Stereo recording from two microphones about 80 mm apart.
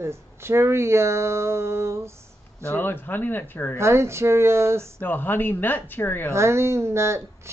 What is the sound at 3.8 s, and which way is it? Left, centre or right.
Speech, right.